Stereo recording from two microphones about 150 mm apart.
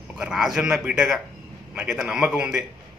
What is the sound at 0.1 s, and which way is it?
A man's voice, 5° right (ahead or behind).